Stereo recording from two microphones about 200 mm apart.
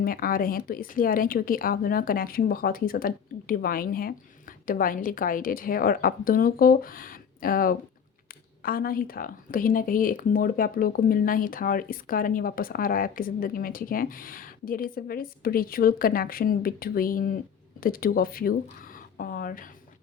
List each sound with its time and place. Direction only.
0.0 s speech: 45° left (ahead or behind)